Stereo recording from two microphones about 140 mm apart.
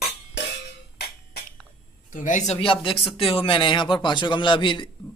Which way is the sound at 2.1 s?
65° left (ahead or behind).